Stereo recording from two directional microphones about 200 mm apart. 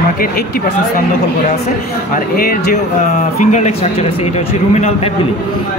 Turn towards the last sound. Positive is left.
turn(degrees=35)  # may be behind; listen again after turning